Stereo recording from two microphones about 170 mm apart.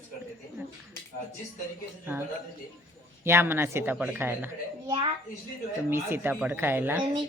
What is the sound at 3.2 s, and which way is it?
Speech, 15° right (ahead or behind).